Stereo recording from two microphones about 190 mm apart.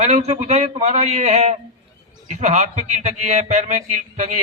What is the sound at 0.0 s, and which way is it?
A man's voice, 35° right (ahead or behind).